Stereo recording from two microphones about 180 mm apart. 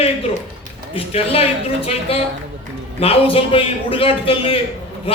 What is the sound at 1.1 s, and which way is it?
A man's voice, 35° left (ahead or behind).